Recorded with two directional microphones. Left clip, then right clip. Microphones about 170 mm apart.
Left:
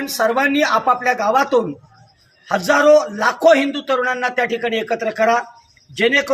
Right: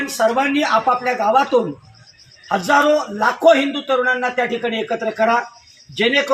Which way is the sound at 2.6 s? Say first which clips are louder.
Left 3 dB; 30° left (ahead or behind).